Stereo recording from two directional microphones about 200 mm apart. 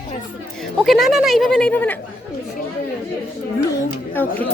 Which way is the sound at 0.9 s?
Centre (ahead or behind).